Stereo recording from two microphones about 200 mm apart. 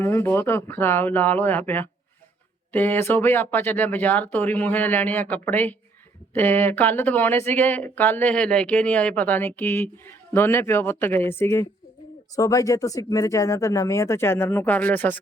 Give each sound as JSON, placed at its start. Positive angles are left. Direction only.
{"t": 0.0, "sound": "speech", "side_deg": 10}